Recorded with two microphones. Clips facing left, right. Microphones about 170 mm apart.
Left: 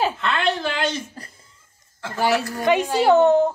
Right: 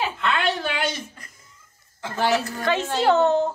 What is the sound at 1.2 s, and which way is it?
Cough, 35° left (ahead or behind).